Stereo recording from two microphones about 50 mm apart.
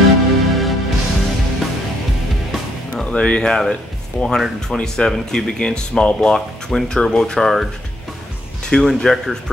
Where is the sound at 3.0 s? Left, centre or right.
Left.